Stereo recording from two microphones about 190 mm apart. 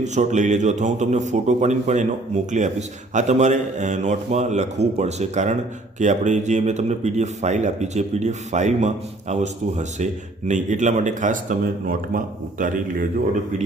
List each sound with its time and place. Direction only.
0.0 s speech: 40° right (ahead or behind)